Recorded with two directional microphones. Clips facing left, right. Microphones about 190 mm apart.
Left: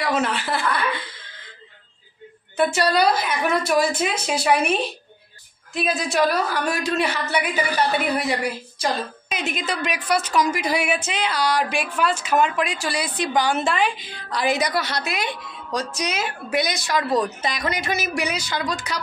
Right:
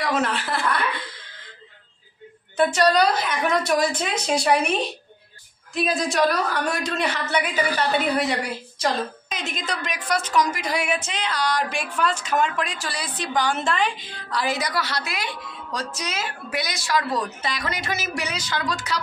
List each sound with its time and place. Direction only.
0.0 s a woman's voice: centre (ahead or behind)
2.5 s a woman's voice: 10° left (ahead or behind)
5.8 s a woman's voice: 5° left (ahead or behind)
8.7 s a woman's voice: 10° left (ahead or behind)